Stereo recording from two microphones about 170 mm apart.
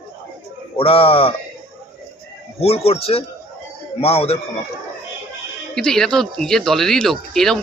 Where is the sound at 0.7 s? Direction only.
35° left (ahead or behind).